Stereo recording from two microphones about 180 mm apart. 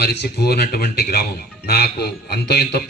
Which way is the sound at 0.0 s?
65° left (ahead or behind).